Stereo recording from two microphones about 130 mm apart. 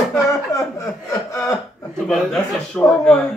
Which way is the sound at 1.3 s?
25° left (ahead or behind).